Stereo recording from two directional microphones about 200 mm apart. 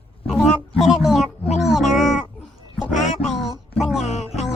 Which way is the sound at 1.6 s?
Centre (ahead or behind).